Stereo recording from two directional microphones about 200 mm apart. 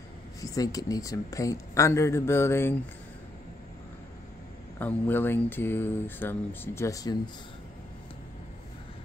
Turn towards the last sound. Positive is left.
turn(degrees=20)  # may be behind; listen again after turning